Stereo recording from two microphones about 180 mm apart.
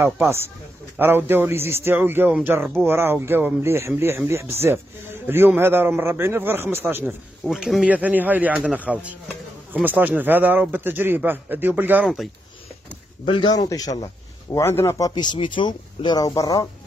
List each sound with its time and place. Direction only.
0.9 s a man's voice: 10° right (ahead or behind)
7.4 s a man's voice: centre (ahead or behind)
13.2 s a man's voice: 30° left (ahead or behind)